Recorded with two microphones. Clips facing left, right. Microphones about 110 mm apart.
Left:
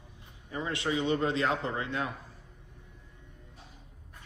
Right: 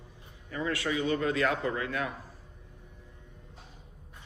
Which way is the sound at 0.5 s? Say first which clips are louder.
Even; 20° left (ahead or behind).